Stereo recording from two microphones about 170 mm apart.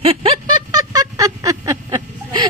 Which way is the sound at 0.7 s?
20° right (ahead or behind).